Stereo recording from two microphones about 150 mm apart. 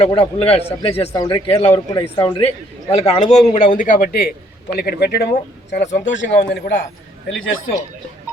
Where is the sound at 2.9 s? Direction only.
45° left (ahead or behind); by 4.3 s 80° left.